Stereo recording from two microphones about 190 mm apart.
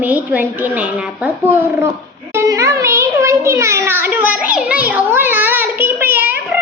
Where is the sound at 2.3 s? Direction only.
15° right (ahead or behind).